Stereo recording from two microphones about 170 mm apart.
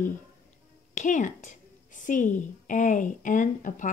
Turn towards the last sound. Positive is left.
turn(degrees=50)  # may be behind; listen again after turning